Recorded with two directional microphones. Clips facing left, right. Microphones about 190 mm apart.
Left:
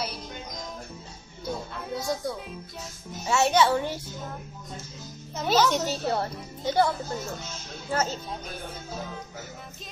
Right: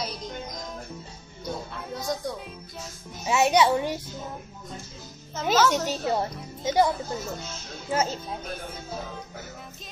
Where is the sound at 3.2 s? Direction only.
15° right (ahead or behind).